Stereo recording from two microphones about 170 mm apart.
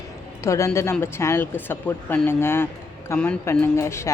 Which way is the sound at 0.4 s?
15° left (ahead or behind).